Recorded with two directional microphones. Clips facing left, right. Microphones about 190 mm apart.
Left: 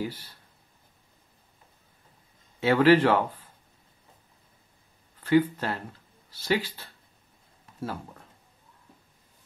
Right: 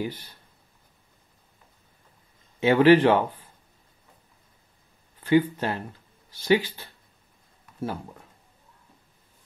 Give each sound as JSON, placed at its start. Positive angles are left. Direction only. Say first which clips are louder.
{"t": 2.6, "sound": "speech", "louder": "right 3 dB", "side_deg": -20}
{"t": 5.2, "sound": "speech", "louder": "right 1 dB", "side_deg": -20}